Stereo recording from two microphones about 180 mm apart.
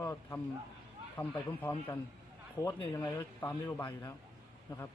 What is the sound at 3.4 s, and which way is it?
Speech, 15° left (ahead or behind).